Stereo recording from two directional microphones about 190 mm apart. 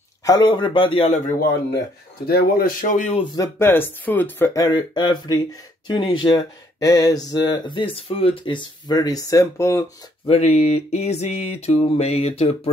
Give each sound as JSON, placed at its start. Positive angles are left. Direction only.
{"t": 0.2, "sound": "speech", "side_deg": 20}
{"t": 2.2, "sound": "speech", "side_deg": 50}
{"t": 3.3, "sound": "speech", "side_deg": 15}
{"t": 4.6, "sound": "speech", "side_deg": 20}
{"t": 10.2, "sound": "a sound", "side_deg": 35}